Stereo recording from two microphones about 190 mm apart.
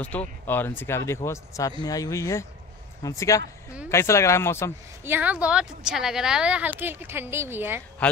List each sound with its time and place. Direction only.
0.0 s speech: 5° left (ahead or behind)
5.0 s speech: 10° right (ahead or behind)
8.0 s speech: 5° left (ahead or behind)